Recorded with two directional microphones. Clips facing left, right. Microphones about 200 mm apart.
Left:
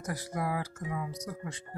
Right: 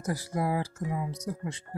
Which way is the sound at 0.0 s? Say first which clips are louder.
Right 4 dB; 30° right (ahead or behind).